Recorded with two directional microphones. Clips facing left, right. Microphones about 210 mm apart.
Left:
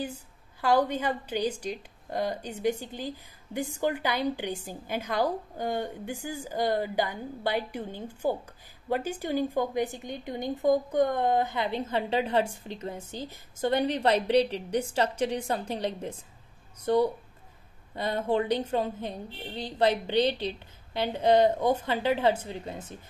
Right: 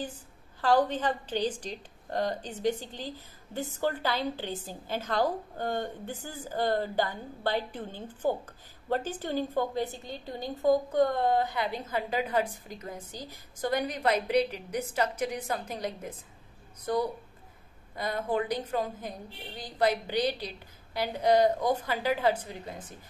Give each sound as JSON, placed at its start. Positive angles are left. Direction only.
{"t": 0.0, "sound": "a woman's voice", "side_deg": 10}